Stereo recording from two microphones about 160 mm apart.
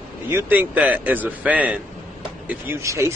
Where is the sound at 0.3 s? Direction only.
15° right (ahead or behind).